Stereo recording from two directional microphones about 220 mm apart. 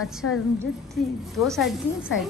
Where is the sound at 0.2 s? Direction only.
90° left.